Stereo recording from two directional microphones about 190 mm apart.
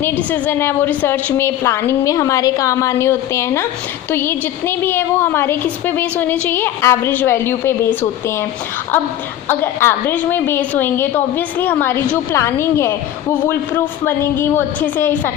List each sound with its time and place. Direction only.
0.0 s a woman's voice: 10° left (ahead or behind)
9.5 s a woman's voice: 10° left (ahead or behind)